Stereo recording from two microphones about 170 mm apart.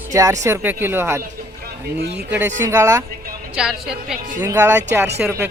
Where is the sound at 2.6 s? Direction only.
20° right (ahead or behind).